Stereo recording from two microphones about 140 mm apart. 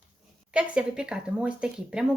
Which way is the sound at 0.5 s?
5° right (ahead or behind).